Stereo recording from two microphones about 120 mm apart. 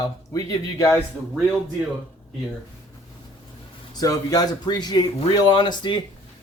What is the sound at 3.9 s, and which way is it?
Speech, 30° left (ahead or behind).